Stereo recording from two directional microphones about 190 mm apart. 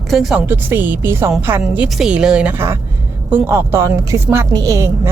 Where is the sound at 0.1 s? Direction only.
Centre (ahead or behind).